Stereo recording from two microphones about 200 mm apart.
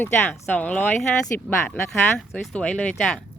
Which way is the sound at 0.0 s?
10° left (ahead or behind).